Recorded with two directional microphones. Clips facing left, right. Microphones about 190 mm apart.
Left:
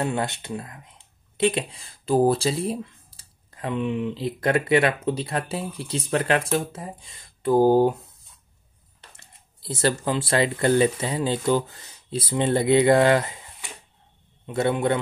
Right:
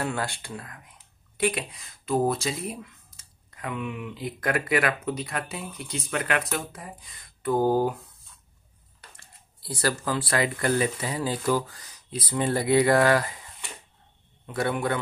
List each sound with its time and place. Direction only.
0.0 s speech: 20° left (ahead or behind)
9.1 s a man's voice: 25° left (ahead or behind)